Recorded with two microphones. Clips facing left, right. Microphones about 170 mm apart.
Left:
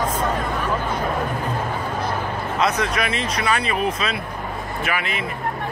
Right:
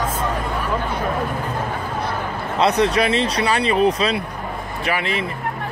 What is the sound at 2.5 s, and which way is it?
Speech, 30° right (ahead or behind).